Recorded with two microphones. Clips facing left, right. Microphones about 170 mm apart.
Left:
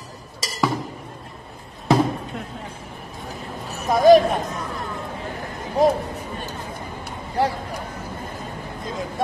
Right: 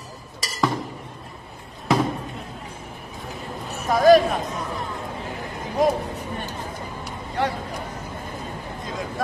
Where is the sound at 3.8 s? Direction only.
Centre (ahead or behind).